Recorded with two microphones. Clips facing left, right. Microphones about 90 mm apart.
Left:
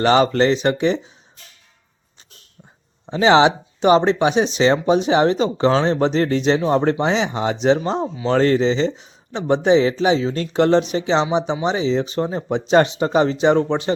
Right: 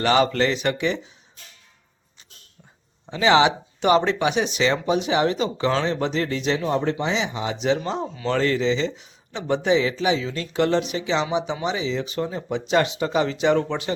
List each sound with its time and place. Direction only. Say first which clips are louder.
0.0 s speech: left 4 dB; 35° left (ahead or behind)
3.1 s speech: left 4 dB; 30° left (ahead or behind)